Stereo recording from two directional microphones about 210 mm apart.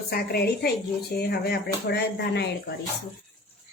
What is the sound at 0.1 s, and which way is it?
Speech, 50° left (ahead or behind).